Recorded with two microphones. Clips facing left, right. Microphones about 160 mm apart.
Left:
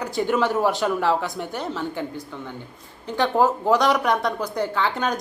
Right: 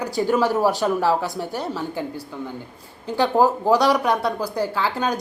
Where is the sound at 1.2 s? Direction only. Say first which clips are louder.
Right 2 dB; 40° right (ahead or behind).